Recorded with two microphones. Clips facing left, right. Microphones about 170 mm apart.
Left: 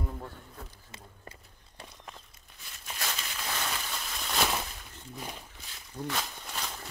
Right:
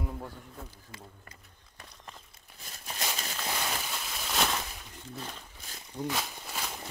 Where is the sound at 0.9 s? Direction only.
30° left (ahead or behind).